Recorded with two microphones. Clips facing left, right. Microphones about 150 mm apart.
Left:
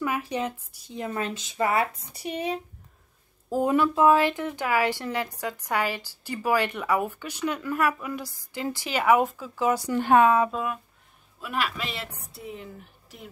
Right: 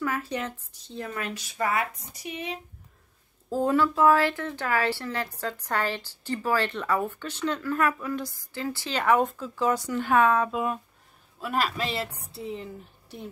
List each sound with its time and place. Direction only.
0.0 s speech: 15° left (ahead or behind)
1.0 s speech: 25° left (ahead or behind)
3.4 s speech: 15° left (ahead or behind)
9.9 s speech: 20° left (ahead or behind)
11.4 s a woman's voice: 40° right (ahead or behind)